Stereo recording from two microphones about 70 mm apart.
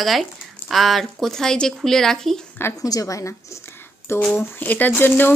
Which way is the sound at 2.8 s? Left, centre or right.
Left.